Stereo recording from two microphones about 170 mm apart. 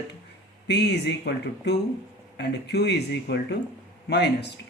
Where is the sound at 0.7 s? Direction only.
75° left (ahead or behind).